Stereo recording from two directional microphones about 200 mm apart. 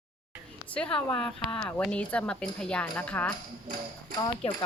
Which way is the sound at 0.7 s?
5° left (ahead or behind).